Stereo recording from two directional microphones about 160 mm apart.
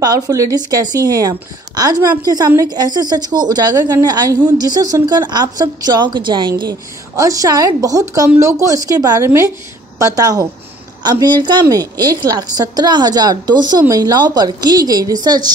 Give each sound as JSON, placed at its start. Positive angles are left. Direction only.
{"t": 0.0, "sound": "a woman's voice", "side_deg": -25}